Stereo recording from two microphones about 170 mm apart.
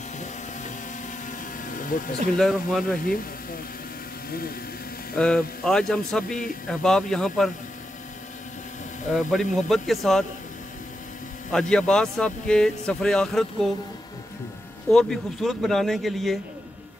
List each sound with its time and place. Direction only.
1.7 s a sound: 50° left (ahead or behind)
2.3 s a man's voice: centre (ahead or behind)
4.3 s speech: 60° left (ahead or behind)
5.1 s a man's voice: 5° left (ahead or behind)
9.1 s a man's voice: centre (ahead or behind)
11.5 s a man's voice: 5° left (ahead or behind)
14.9 s a man's voice: centre (ahead or behind)